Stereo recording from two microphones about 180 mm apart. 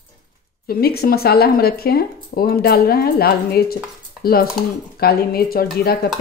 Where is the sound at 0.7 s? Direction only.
60° left (ahead or behind).